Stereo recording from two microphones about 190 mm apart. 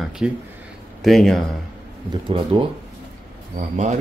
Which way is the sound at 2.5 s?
25° right (ahead or behind).